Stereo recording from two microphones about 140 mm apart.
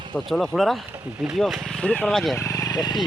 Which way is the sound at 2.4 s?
20° left (ahead or behind).